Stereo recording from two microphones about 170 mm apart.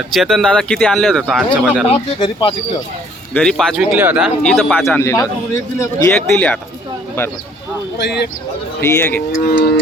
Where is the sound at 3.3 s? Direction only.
5° left (ahead or behind).